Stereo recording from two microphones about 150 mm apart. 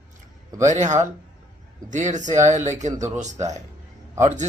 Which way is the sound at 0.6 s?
50° right (ahead or behind).